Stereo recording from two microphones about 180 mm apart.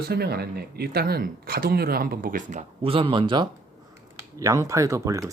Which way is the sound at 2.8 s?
30° right (ahead or behind).